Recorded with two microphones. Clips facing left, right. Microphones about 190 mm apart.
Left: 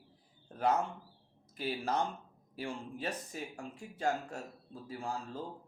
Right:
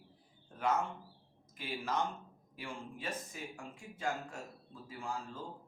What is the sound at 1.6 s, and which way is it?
Speech, 35° left (ahead or behind).